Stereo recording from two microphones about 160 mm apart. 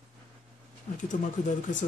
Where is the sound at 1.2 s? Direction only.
55° left (ahead or behind).